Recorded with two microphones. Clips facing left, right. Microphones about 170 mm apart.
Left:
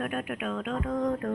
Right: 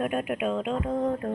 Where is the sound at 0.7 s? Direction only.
30° right (ahead or behind).